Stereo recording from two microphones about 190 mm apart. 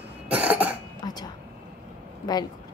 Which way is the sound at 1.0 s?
20° left (ahead or behind).